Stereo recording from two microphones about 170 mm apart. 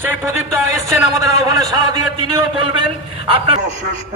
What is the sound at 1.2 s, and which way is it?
Speech, 20° right (ahead or behind).